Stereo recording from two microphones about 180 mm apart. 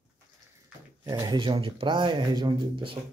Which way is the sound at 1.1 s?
20° right (ahead or behind).